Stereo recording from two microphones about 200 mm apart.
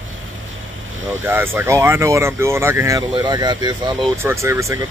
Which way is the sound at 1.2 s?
10° right (ahead or behind).